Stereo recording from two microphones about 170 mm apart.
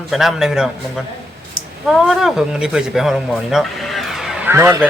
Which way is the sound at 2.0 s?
5° right (ahead or behind).